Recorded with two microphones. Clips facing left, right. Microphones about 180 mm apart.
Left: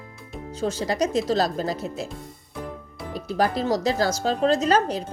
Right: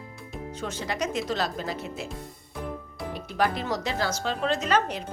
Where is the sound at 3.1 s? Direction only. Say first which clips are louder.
Left 4 dB; 35° left (ahead or behind).